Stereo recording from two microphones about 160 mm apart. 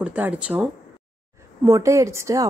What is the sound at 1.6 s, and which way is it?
Speech, 20° right (ahead or behind).